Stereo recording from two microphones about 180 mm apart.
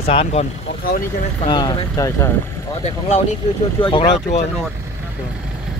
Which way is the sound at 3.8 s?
25° left (ahead or behind).